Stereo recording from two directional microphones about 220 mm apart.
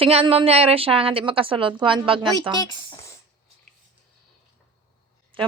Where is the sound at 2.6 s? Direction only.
15° left (ahead or behind).